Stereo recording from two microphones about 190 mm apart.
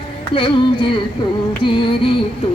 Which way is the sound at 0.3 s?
25° left (ahead or behind).